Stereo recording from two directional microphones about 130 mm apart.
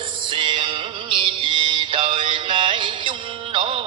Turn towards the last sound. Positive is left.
turn(degrees=-40)  # may be behind; listen again after turning